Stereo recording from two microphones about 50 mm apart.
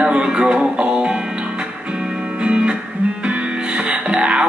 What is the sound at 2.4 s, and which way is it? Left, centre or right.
Music, centre.